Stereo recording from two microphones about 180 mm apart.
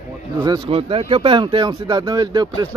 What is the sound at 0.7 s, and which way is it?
Speech, 30° right (ahead or behind).